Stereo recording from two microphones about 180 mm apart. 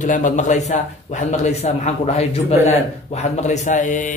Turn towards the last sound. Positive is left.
turn(degrees=45)  # may be behind; listen again after turning